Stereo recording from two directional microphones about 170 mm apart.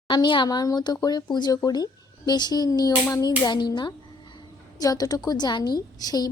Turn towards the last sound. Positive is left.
turn(degrees=20)  # may be behind; listen again after turning